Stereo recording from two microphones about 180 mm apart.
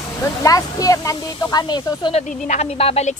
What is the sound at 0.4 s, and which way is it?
Speech, 20° left (ahead or behind).